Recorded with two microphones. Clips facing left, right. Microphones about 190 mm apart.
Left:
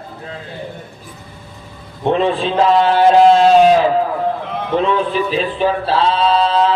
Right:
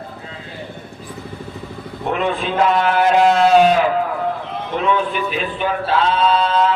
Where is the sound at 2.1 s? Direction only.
30° left (ahead or behind).